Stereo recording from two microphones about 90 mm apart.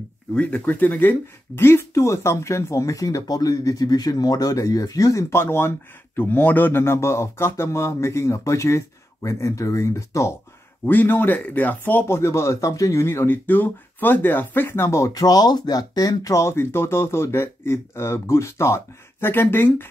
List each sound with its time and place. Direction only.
0.3 s speech: 15° left (ahead or behind); by 10.3 s 35° left (ahead or behind)
10.9 s speech: 20° left (ahead or behind)